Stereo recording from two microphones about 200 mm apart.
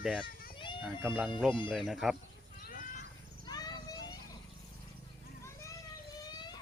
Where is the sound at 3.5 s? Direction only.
20° left (ahead or behind).